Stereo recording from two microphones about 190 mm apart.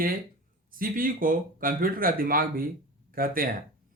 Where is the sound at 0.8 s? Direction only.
45° right (ahead or behind).